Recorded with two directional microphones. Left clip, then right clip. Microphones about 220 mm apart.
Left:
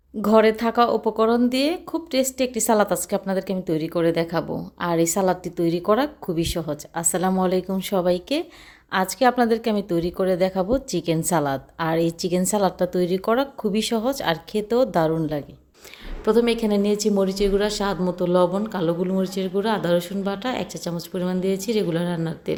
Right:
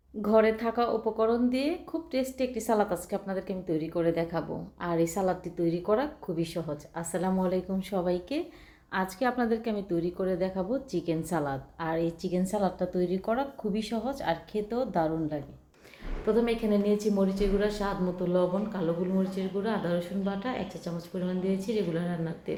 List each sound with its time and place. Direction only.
0.2 s speech: 50° left (ahead or behind)